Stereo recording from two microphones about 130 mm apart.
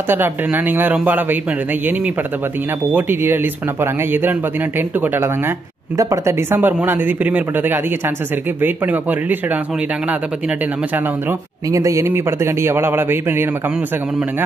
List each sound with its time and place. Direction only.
0.1 s speech: 15° right (ahead or behind)
2.9 s speech: 15° right (ahead or behind)
11.7 s a man's voice: 25° right (ahead or behind)